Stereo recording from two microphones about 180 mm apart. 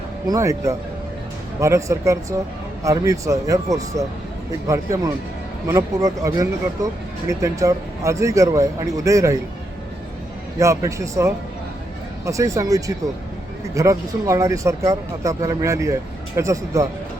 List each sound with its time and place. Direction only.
0.3 s speech: 15° right (ahead or behind)
10.6 s speech: 15° right (ahead or behind)